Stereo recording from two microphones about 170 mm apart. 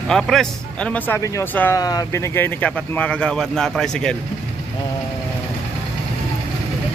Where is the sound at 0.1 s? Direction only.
5° left (ahead or behind).